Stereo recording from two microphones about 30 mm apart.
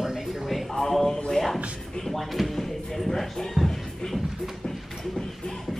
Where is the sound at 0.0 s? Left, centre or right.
Centre.